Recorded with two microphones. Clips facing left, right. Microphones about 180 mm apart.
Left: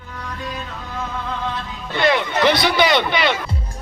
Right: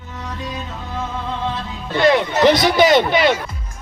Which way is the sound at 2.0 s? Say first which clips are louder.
Right 4 dB; 40° right (ahead or behind).